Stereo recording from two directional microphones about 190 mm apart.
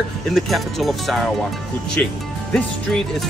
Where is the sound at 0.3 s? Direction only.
Centre (ahead or behind).